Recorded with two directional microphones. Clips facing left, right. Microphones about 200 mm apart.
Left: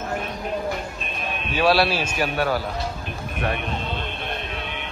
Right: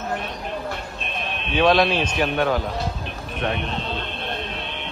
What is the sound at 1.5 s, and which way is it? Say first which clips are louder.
A man's voice: right 2 dB; 5° left (ahead or behind).